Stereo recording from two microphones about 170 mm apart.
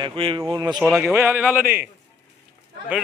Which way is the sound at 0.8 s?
5° right (ahead or behind).